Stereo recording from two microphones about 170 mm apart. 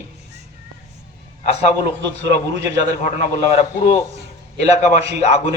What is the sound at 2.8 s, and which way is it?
A man's voice, 45° left (ahead or behind).